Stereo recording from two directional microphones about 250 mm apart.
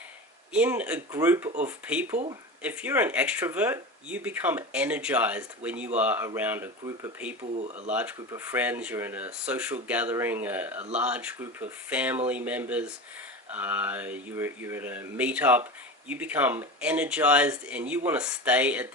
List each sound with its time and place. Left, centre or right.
0.5 s speech: centre
7.5 s speech: right
7.9 s speech: centre